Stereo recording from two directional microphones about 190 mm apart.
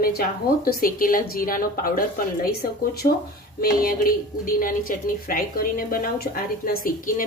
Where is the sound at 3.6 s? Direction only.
50° left (ahead or behind).